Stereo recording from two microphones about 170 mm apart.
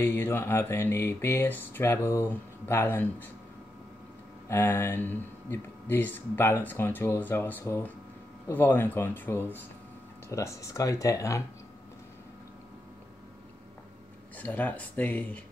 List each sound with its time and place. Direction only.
0.0 s speech: 10° left (ahead or behind)
4.5 s speech: 15° left (ahead or behind)
14.3 s speech: 10° left (ahead or behind)